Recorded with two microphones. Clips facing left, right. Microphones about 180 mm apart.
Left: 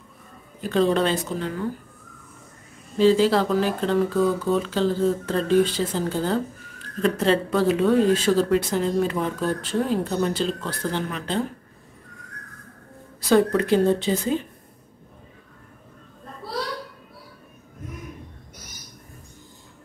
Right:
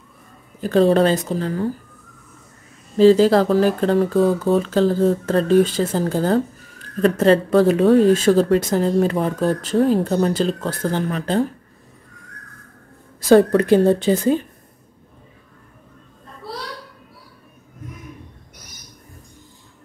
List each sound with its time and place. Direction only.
0.6 s speech: 40° right (ahead or behind)
3.0 s speech: 40° right (ahead or behind)
13.3 s speech: 50° right (ahead or behind)